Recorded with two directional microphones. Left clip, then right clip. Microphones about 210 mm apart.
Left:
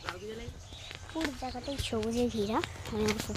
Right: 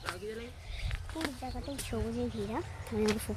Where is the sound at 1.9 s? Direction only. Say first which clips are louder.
Left 5 dB; 55° left (ahead or behind).